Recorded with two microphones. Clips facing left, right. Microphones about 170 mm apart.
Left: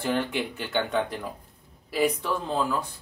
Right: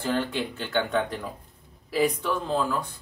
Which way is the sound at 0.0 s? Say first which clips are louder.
Even; 15° left (ahead or behind).